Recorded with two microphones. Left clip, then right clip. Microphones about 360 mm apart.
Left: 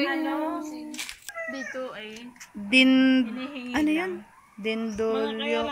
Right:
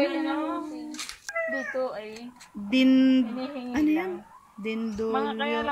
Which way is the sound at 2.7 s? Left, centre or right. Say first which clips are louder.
Left 2 dB; centre.